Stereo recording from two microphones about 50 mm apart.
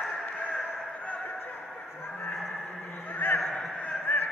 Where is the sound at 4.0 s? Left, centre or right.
Left.